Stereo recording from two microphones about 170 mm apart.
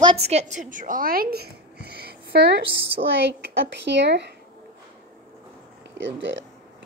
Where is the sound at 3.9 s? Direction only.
90° right.